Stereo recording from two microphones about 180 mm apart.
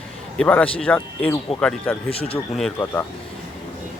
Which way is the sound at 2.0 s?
35° left (ahead or behind).